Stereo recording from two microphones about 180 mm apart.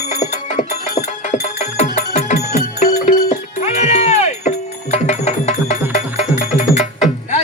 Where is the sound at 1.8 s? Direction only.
40° left (ahead or behind).